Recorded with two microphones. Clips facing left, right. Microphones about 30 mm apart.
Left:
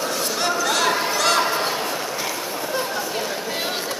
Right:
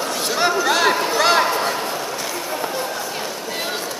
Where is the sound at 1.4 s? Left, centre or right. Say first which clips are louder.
Right 2 dB; centre.